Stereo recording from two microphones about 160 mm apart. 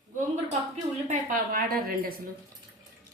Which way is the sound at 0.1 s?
50° right (ahead or behind).